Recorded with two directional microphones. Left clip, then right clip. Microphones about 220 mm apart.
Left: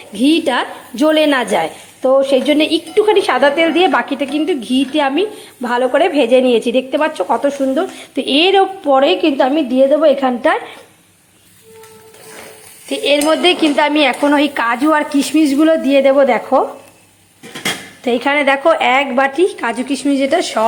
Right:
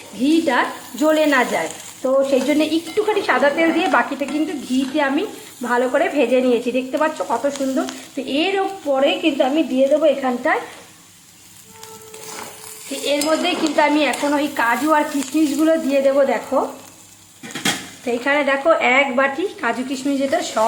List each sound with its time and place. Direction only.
0.2 s speech: 20° left (ahead or behind)
12.9 s speech: 20° left (ahead or behind)
18.0 s speech: 25° left (ahead or behind)